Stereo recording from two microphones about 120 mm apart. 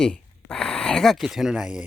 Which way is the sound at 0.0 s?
5° left (ahead or behind).